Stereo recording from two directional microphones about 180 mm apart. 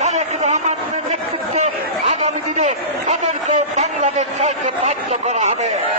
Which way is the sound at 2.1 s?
40° right (ahead or behind).